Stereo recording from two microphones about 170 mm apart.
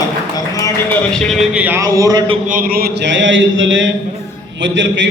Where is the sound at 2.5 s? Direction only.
55° right (ahead or behind).